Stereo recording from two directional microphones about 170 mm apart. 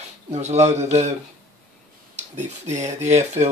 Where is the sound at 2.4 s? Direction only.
45° right (ahead or behind).